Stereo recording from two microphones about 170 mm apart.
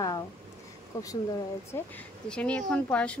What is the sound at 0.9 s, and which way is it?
Speech, 20° left (ahead or behind).